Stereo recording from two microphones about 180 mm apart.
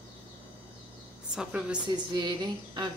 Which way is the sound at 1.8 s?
25° right (ahead or behind).